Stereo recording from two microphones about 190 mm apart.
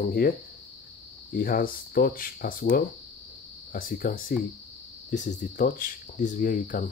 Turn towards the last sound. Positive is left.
turn(degrees=45)  # may be behind; listen again after turning